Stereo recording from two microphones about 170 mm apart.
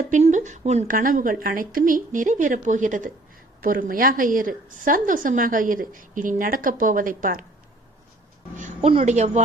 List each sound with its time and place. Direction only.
0.1 s a woman's voice: 45° right (ahead or behind)
8.5 s a sound: 45° right (ahead or behind)
8.9 s speech: 40° right (ahead or behind)